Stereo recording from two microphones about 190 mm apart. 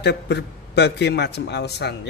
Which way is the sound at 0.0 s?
65° left (ahead or behind).